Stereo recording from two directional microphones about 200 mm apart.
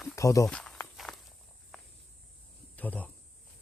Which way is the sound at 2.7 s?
10° left (ahead or behind).